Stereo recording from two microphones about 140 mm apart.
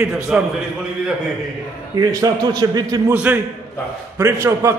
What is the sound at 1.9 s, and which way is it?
A man's voice, 30° right (ahead or behind).